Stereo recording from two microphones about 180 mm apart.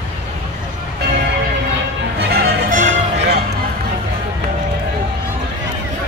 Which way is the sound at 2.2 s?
60° right (ahead or behind).